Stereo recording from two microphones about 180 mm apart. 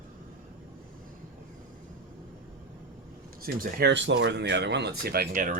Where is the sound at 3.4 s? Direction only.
55° right (ahead or behind).